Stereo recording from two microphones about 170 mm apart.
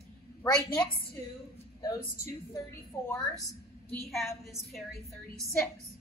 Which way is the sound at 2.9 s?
15° left (ahead or behind).